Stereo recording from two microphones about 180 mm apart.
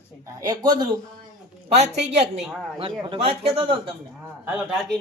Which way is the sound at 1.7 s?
40° right (ahead or behind).